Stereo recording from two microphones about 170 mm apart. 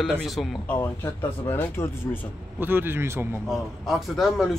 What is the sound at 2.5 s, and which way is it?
Speech, 10° right (ahead or behind).